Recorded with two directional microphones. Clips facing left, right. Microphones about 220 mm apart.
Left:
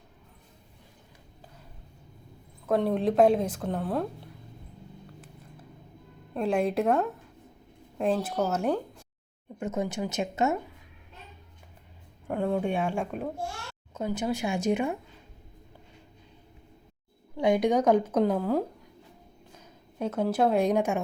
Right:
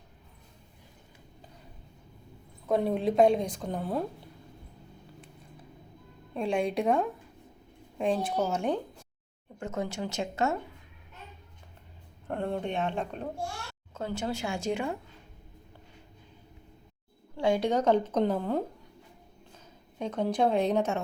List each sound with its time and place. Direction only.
2.6 s a woman's voice: centre (ahead or behind)
6.3 s a woman's voice: 5° left (ahead or behind)
9.6 s a woman's voice: 20° left (ahead or behind)
12.3 s a woman's voice: 5° left (ahead or behind); by 14.9 s 20° left (ahead or behind)
17.3 s a woman's voice: 15° left (ahead or behind)
20.0 s a woman's voice: 5° left (ahead or behind)